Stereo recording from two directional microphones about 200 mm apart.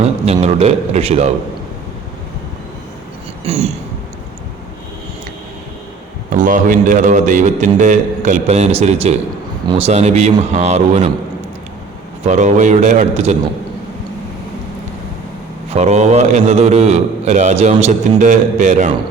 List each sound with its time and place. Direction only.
0.3 s a man's voice: 30° right (ahead or behind)
3.4 s a sound: 35° right (ahead or behind)
6.3 s a man's voice: 40° right (ahead or behind)
12.2 s a man's voice: 35° right (ahead or behind)
15.7 s a man's voice: 35° right (ahead or behind)